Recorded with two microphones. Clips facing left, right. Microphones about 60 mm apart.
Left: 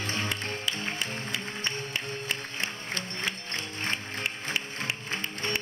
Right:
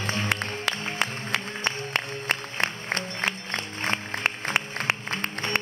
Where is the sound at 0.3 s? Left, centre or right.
Right.